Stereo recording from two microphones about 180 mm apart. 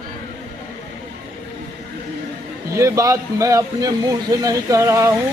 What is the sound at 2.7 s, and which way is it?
A man's voice, 15° right (ahead or behind).